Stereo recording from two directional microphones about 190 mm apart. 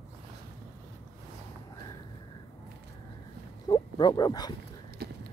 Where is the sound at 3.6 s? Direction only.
20° left (ahead or behind).